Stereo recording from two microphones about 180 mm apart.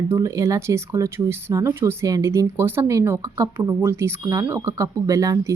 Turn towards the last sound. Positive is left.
turn(degrees=-15)  # may be behind; listen again after turning